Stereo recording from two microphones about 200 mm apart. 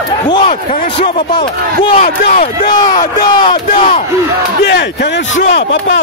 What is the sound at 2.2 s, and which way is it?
Speech, 40° left (ahead or behind).